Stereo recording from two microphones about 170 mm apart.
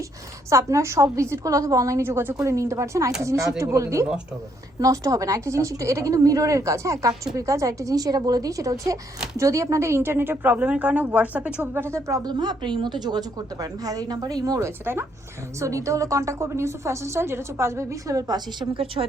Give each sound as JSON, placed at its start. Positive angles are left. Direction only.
{"t": 0.5, "sound": "a woman's voice", "side_deg": -15}